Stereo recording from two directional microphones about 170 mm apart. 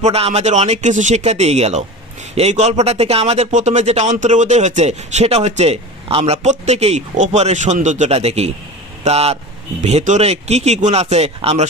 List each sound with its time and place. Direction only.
0.0 s a man's voice: 40° right (ahead or behind)